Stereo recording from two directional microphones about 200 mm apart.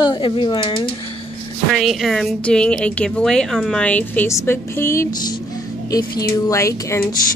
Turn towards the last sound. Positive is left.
turn(degrees=15)  # may be behind; listen again after turning